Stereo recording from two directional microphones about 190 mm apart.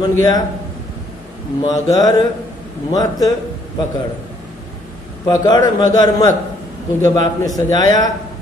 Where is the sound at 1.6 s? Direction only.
20° left (ahead or behind).